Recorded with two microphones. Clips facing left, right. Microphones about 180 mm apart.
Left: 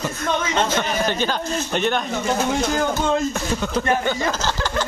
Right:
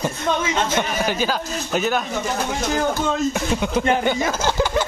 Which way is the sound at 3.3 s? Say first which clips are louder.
Right 2 dB; 10° right (ahead or behind).